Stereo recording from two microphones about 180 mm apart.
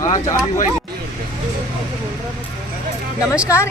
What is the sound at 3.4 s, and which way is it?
Speech, 15° left (ahead or behind).